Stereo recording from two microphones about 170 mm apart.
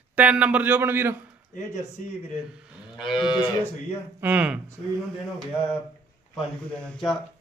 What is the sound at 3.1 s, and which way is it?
Speech, 25° left (ahead or behind).